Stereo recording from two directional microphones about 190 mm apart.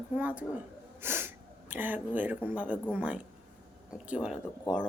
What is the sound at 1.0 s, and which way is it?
Sneeze, 10° right (ahead or behind).